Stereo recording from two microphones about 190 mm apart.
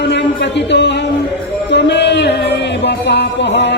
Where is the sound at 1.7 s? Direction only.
65° left (ahead or behind).